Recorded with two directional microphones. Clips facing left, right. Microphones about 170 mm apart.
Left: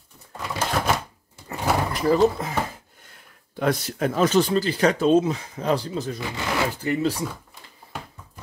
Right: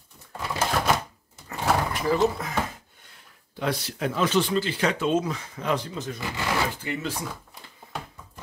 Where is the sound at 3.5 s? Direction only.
50° left (ahead or behind).